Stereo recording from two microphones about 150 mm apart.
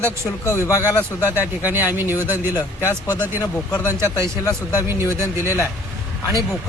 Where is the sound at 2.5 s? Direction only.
20° left (ahead or behind).